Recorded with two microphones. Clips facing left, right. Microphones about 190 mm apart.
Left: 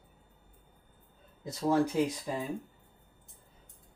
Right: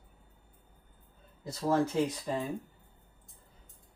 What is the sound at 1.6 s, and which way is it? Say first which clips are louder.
Speech: left 1 dB; 10° left (ahead or behind).